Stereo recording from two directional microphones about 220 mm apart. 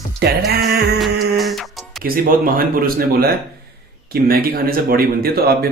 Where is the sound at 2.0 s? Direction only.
40° right (ahead or behind).